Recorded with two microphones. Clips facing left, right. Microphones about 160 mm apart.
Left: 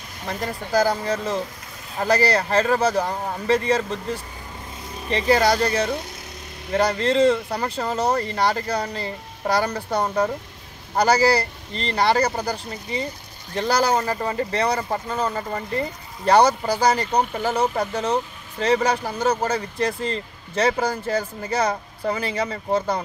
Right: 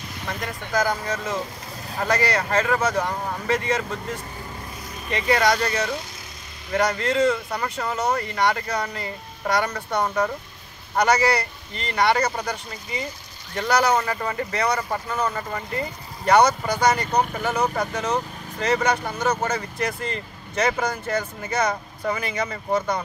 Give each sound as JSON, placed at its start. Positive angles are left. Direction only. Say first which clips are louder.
{"t": 0.3, "sound": "speech", "louder": "left 4 dB", "side_deg": 30}
{"t": 22.0, "sound": "speech", "louder": "left 2 dB", "side_deg": 30}